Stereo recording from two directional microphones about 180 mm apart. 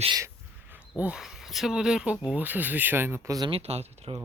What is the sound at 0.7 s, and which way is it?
Speech, 10° right (ahead or behind).